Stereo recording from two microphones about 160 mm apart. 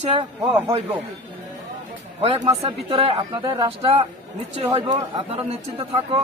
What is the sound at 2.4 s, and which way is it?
A man's voice, 35° right (ahead or behind).